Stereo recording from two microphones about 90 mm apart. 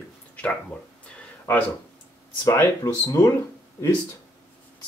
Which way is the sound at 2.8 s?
45° left (ahead or behind).